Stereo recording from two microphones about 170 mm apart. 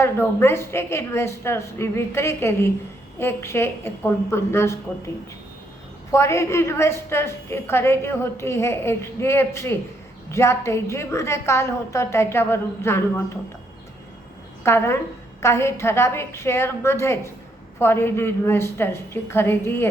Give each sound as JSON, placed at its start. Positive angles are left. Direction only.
{"t": 0.0, "sound": "a woman's voice", "side_deg": 15}
{"t": 6.1, "sound": "a woman's voice", "side_deg": 15}
{"t": 14.6, "sound": "a woman's voice", "side_deg": 15}